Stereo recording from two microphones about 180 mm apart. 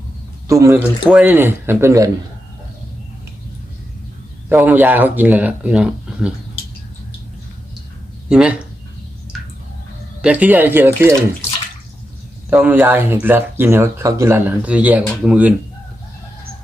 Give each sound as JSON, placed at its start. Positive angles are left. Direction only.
{"t": 0.4, "sound": "a man's voice", "side_deg": -15}
{"t": 4.4, "sound": "speech", "side_deg": -10}
{"t": 8.3, "sound": "speech", "side_deg": -5}
{"t": 10.2, "sound": "speech", "side_deg": -5}
{"t": 12.5, "sound": "speech", "side_deg": -10}